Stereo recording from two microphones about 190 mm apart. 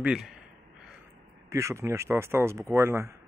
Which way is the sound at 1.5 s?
15° right (ahead or behind).